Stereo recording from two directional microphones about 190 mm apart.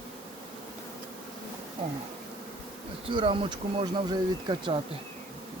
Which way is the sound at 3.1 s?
25° right (ahead or behind).